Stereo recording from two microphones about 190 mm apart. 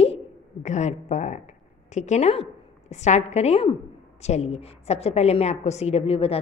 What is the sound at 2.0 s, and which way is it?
A woman's voice, 35° left (ahead or behind).